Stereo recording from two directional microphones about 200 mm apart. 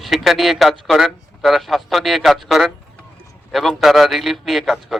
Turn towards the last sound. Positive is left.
turn(degrees=0)  # may be behind; listen again after turning